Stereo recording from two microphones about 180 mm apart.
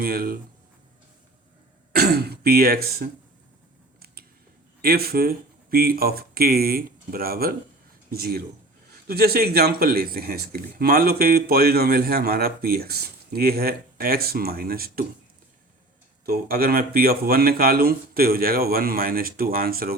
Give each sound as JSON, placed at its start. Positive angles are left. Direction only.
{"t": 0.0, "sound": "speech", "side_deg": -55}
{"t": 1.9, "sound": "speech", "side_deg": -60}
{"t": 4.0, "sound": "a sound", "side_deg": -60}
{"t": 4.8, "sound": "speech", "side_deg": -55}
{"t": 16.2, "sound": "speech", "side_deg": -55}